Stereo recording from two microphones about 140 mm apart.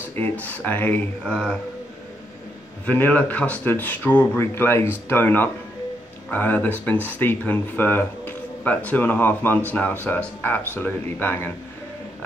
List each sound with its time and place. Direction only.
0.2 s speech: 10° left (ahead or behind)
2.9 s speech: 10° left (ahead or behind)